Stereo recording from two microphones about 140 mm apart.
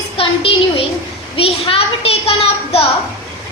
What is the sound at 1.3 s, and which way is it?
A child's voice, 45° left (ahead or behind).